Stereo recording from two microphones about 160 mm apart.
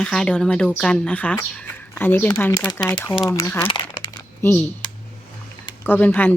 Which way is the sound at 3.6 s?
30° left (ahead or behind).